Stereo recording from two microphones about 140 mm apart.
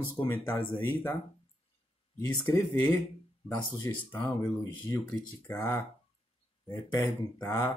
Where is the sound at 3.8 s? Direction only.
15° left (ahead or behind).